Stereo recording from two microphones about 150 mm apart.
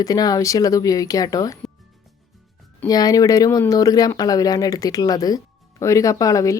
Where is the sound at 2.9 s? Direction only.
25° left (ahead or behind).